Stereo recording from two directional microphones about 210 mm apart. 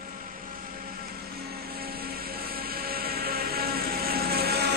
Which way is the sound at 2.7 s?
45° right (ahead or behind).